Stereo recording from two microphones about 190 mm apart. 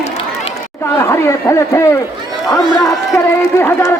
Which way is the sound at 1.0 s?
15° left (ahead or behind).